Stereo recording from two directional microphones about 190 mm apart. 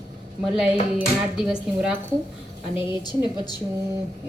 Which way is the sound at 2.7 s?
25° left (ahead or behind).